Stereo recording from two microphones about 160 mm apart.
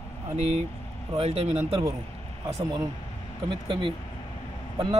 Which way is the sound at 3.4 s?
30° right (ahead or behind).